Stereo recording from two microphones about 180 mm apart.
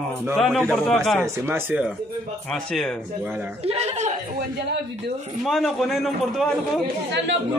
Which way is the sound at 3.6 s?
35° right (ahead or behind).